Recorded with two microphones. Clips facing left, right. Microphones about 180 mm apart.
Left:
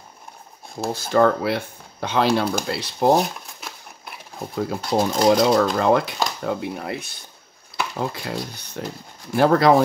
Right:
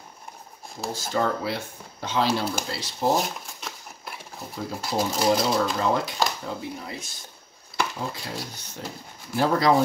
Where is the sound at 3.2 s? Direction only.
Centre (ahead or behind).